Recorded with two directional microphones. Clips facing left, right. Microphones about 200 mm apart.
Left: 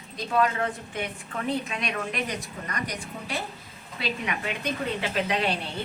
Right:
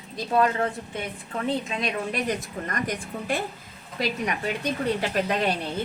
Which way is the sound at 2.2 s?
50° right (ahead or behind).